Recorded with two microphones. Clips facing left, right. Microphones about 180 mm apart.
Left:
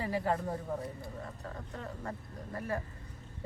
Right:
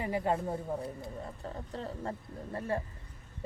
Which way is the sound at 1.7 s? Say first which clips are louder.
Right 4 dB; 30° right (ahead or behind).